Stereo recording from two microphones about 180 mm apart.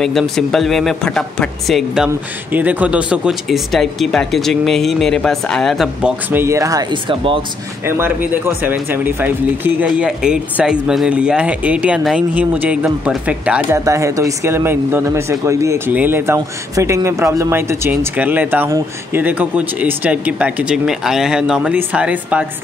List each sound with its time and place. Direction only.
0.0 s speech: centre (ahead or behind)
6.3 s speech: 15° right (ahead or behind)
7.8 s speech: 10° right (ahead or behind)
13.7 s speech: 15° right (ahead or behind)